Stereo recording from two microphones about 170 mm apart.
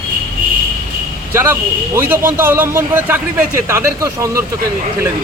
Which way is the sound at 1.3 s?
15° right (ahead or behind).